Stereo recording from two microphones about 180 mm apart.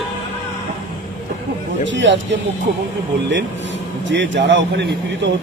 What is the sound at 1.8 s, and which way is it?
A man's voice, 90° right.